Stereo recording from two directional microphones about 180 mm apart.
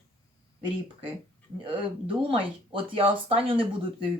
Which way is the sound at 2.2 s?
30° right (ahead or behind).